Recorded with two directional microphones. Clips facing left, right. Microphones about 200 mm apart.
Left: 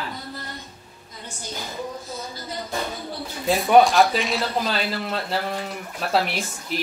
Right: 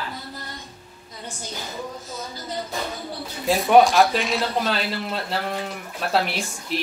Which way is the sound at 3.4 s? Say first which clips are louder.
Even; centre (ahead or behind).